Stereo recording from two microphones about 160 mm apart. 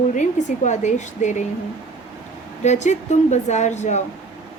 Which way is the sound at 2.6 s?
45° left (ahead or behind).